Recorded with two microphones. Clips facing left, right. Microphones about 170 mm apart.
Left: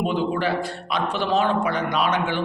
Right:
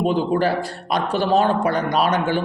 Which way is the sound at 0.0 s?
40° right (ahead or behind).